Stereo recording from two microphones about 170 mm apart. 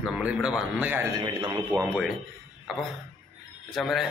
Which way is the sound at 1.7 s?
10° right (ahead or behind).